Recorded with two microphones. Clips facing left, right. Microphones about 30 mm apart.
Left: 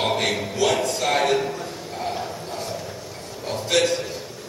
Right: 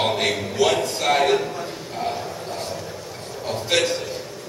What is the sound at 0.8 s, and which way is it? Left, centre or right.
Speech, centre.